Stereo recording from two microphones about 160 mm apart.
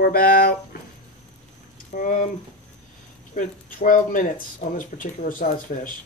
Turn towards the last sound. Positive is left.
turn(degrees=55)  # may be behind; listen again after turning